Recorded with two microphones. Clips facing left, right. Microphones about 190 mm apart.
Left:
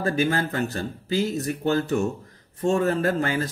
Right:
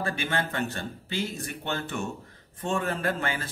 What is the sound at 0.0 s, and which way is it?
Speech, 40° left (ahead or behind).